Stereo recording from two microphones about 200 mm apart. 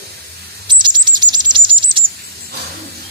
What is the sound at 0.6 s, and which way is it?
Coin, 25° right (ahead or behind).